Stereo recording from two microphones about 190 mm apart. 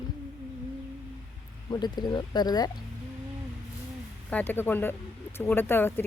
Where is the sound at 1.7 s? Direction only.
20° left (ahead or behind).